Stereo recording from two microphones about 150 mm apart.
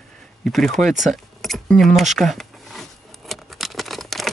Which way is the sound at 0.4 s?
Centre (ahead or behind).